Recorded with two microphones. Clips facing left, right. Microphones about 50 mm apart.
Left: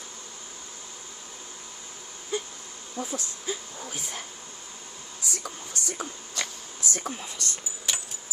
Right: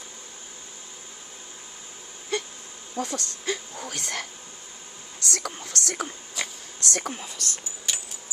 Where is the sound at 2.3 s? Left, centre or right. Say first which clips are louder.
Right 2 dB; right.